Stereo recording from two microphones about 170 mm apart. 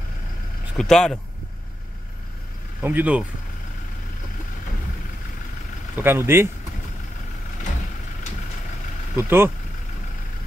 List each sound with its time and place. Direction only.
0.7 s speech: 5° left (ahead or behind)
2.8 s speech: 10° right (ahead or behind)
5.9 s speech: 15° right (ahead or behind)
9.1 s speech: 15° right (ahead or behind)